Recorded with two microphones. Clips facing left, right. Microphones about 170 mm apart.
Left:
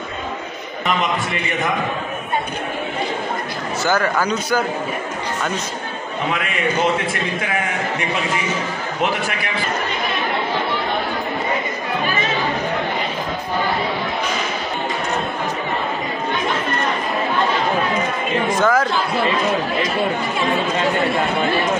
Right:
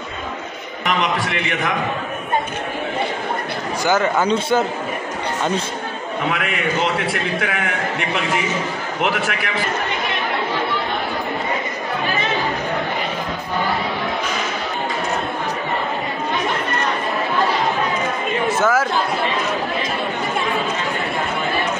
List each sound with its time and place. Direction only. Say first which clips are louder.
3.8 s a man's voice: right 1 dB; 20° right (ahead or behind)
18.5 s a man's voice: left 1 dB; 5° right (ahead or behind)